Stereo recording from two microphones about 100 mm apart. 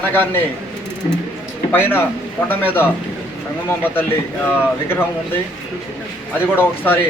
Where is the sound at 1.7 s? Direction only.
20° left (ahead or behind).